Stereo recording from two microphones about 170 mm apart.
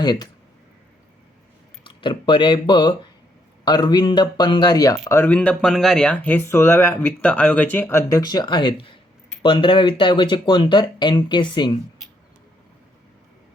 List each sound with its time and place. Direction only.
0.0 s speech: 25° left (ahead or behind)
1.8 s speech: 30° left (ahead or behind)
5.0 s speech: 10° left (ahead or behind); by 11.8 s 25° left (ahead or behind)